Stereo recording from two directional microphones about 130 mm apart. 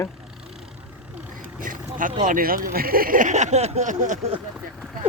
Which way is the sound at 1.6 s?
90° right.